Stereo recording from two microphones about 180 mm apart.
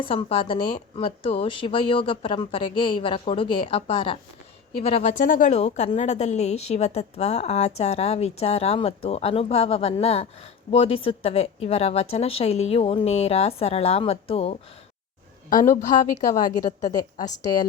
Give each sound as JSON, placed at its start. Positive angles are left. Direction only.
{"t": 0.0, "sound": "a woman's voice", "side_deg": 30}
{"t": 15.8, "sound": "a woman's voice", "side_deg": 45}
{"t": 16.3, "sound": "a woman's voice", "side_deg": 20}